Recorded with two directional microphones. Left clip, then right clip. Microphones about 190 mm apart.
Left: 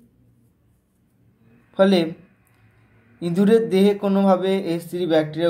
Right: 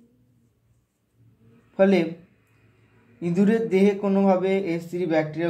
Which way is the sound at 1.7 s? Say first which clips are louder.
Left 2 dB; 30° left (ahead or behind).